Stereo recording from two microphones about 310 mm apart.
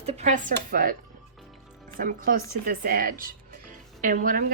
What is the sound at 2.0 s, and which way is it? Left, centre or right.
Speech, right.